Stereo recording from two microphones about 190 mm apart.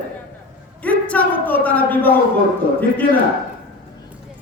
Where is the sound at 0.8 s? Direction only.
10° left (ahead or behind).